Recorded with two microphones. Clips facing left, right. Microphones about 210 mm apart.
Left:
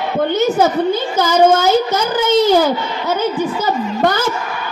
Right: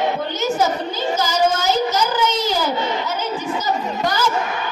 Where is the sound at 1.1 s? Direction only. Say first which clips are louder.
Left 7 dB; 55° left (ahead or behind).